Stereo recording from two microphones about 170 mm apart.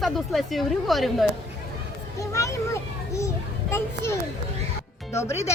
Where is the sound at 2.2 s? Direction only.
20° left (ahead or behind).